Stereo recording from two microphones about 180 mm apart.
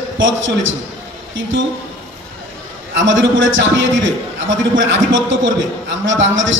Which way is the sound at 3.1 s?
90° right.